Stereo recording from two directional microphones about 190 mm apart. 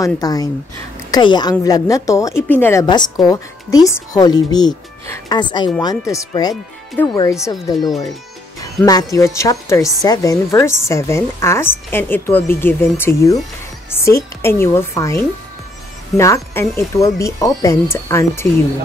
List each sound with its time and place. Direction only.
0.0 s a woman's voice: 20° left (ahead or behind)